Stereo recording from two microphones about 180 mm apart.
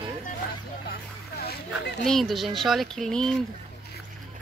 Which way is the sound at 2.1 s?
Centre (ahead or behind).